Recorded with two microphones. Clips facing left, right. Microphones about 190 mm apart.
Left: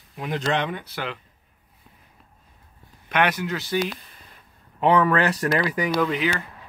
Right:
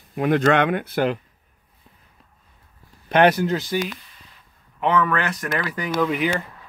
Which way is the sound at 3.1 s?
35° right (ahead or behind).